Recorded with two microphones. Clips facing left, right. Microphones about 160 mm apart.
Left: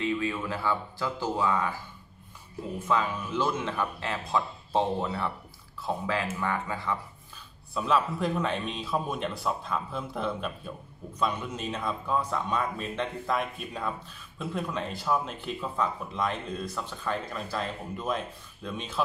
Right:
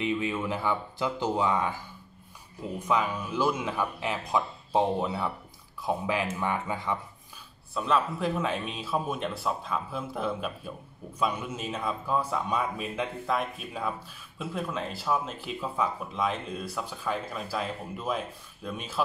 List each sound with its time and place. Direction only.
0.0 s speech: 20° right (ahead or behind)
2.9 s a man's voice: 10° right (ahead or behind)
7.7 s a man's voice: centre (ahead or behind)